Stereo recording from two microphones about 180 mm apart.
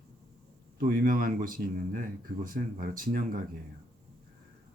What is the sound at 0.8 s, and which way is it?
Speech, 55° right (ahead or behind).